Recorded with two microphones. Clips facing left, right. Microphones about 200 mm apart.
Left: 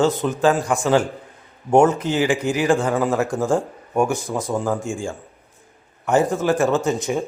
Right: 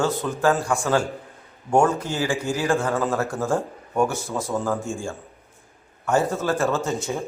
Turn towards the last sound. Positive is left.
turn(degrees=15)  # may be behind; listen again after turning